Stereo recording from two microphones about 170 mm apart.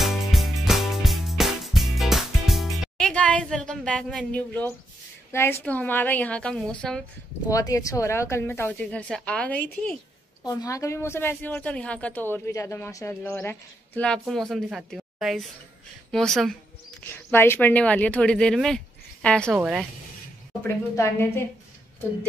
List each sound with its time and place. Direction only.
0.0 s music: centre (ahead or behind)
5.3 s a woman's voice: 15° left (ahead or behind)
7.5 s a woman's voice: 20° left (ahead or behind)
10.4 s a woman's voice: 20° left (ahead or behind); by 16.5 s centre (ahead or behind)
17.1 s a woman's voice: 15° left (ahead or behind)
19.6 s speech: 5° right (ahead or behind)
20.9 s a woman's voice: 15° left (ahead or behind)